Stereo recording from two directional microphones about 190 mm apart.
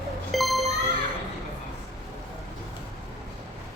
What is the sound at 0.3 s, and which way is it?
Music, centre (ahead or behind).